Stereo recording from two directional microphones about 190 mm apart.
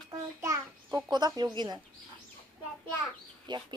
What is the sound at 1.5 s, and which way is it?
Speech, 20° right (ahead or behind).